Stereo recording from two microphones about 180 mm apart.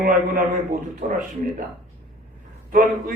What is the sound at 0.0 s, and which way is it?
Speech, 50° right (ahead or behind).